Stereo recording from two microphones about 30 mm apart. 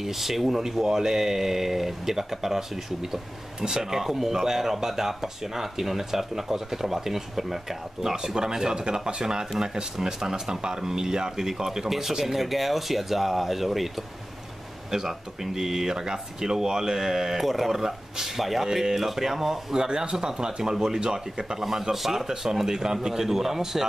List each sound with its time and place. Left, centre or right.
0.0 s speech: centre
3.6 s speech: right
4.0 s speech: centre
14.9 s speech: centre
19.8 s speech: right
21.6 s speech: centre